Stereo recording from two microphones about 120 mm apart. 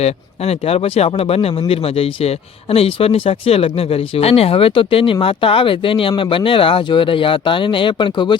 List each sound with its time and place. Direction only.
0.0 s speech: 60° left (ahead or behind); by 8.4 s 40° left (ahead or behind)